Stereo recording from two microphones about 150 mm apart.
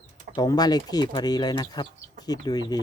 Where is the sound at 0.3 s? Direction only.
25° left (ahead or behind).